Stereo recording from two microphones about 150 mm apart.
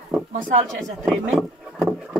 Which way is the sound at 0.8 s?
Centre (ahead or behind).